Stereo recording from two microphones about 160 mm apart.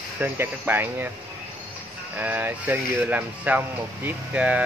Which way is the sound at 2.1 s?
10° right (ahead or behind).